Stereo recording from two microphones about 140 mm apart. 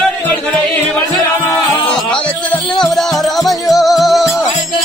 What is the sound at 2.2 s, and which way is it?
Music, 10° left (ahead or behind).